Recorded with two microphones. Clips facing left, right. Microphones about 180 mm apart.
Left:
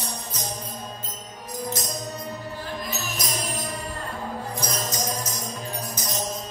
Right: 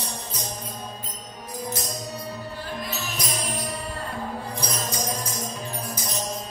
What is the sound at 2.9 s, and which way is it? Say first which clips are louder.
Music: even; 45° left (ahead or behind).